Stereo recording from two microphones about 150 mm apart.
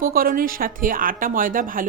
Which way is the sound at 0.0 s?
75° right (ahead or behind).